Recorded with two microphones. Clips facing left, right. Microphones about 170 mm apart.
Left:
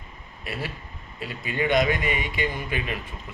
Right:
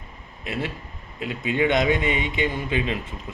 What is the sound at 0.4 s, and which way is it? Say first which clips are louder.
A man's voice: right 4 dB; 20° right (ahead or behind).